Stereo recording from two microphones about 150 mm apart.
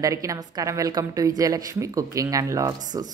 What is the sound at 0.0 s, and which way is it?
Speech, 20° right (ahead or behind).